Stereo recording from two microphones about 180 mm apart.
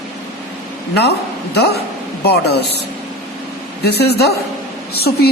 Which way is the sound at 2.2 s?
65° left (ahead or behind).